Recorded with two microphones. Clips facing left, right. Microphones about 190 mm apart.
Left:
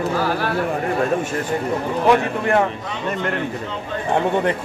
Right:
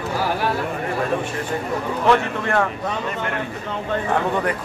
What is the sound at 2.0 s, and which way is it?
Speech, 20° left (ahead or behind).